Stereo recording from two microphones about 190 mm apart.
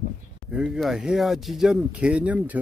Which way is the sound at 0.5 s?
5° right (ahead or behind).